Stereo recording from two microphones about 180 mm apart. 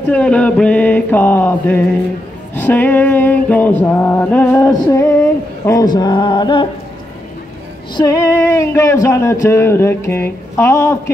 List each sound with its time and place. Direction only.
0.1 s speech: 5° left (ahead or behind)
4.6 s speech: 20° left (ahead or behind)
7.9 s speech: 20° left (ahead or behind)